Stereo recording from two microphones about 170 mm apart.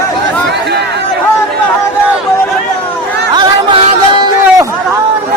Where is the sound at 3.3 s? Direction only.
25° right (ahead or behind).